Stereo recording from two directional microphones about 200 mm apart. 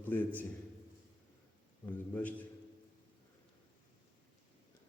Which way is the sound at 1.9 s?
10° left (ahead or behind).